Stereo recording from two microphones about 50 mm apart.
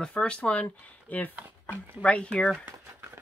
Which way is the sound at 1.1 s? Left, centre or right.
Left.